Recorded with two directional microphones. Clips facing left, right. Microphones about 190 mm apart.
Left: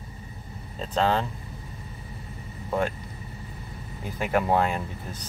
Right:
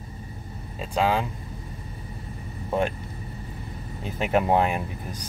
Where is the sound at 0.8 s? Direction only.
10° right (ahead or behind).